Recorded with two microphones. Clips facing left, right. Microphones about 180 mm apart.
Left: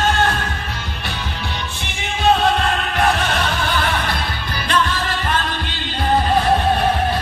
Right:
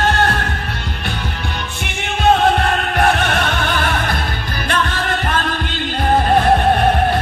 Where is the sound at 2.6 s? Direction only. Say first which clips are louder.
Right 3 dB; 55° right (ahead or behind).